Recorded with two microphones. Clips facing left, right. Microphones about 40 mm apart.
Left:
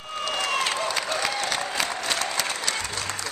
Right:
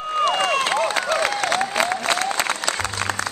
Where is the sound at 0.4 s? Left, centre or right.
Right.